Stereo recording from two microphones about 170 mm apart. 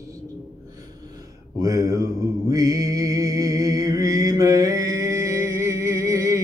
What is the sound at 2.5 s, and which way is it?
Music, 20° right (ahead or behind).